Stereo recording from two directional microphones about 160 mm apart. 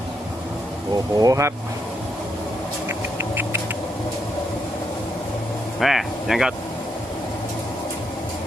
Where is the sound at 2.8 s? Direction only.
15° right (ahead or behind).